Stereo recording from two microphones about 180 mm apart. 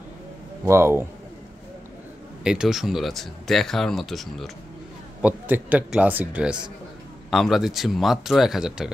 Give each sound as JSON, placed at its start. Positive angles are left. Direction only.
{"t": 0.7, "sound": "speech", "side_deg": -15}
{"t": 2.4, "sound": "speech", "side_deg": -5}